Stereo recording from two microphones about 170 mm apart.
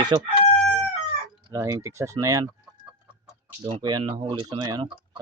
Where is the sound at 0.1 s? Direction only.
25° right (ahead or behind).